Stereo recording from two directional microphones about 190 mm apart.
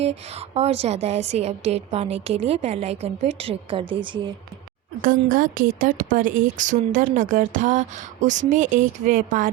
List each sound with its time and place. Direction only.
0.0 s a woman's voice: 35° right (ahead or behind)
5.0 s speech: 45° right (ahead or behind)